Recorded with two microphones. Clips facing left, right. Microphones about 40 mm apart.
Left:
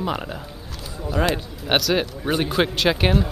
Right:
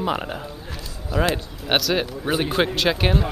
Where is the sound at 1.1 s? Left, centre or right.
Centre.